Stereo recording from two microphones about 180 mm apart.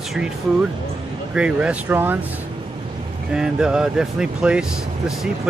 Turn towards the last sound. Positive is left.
turn(degrees=-5)  # may be behind; listen again after turning